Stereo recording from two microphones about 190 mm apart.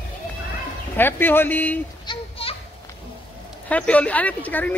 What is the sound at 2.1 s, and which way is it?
Children playing, 30° left (ahead or behind).